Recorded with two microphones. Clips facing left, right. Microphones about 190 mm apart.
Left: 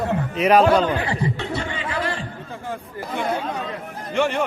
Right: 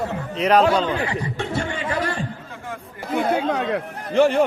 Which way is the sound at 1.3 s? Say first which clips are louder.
Right 2 dB; 50° right (ahead or behind).